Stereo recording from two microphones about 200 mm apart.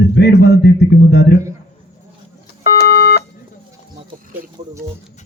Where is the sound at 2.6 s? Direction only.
50° left (ahead or behind).